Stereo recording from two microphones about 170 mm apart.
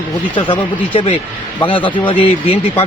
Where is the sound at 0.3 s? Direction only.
30° left (ahead or behind).